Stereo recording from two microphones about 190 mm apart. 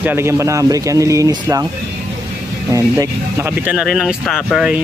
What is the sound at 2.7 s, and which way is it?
Speech, 15° right (ahead or behind).